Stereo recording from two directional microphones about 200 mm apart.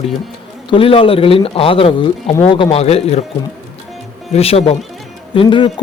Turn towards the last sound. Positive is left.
turn(degrees=25)  # may be behind; listen again after turning